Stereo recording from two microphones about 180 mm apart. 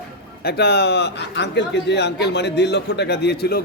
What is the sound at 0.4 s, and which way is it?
A man's voice, 65° left (ahead or behind).